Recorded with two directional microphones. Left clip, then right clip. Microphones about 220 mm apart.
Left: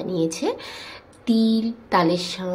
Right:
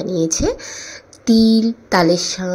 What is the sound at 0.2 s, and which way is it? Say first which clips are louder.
A woman's voice: right 5 dB; 15° right (ahead or behind).